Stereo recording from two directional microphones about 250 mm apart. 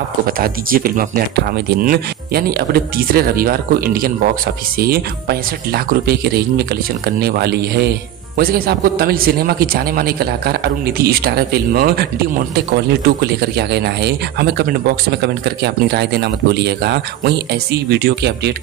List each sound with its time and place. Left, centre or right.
0.4 s a man's voice: right